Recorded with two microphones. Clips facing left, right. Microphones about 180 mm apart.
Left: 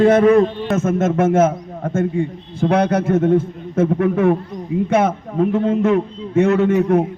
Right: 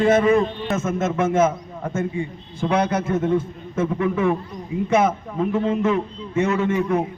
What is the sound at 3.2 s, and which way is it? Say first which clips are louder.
A man's voice: left 5 dB; 55° left (ahead or behind).